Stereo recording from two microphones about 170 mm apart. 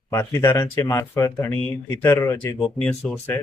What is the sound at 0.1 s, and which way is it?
Speech, 15° left (ahead or behind).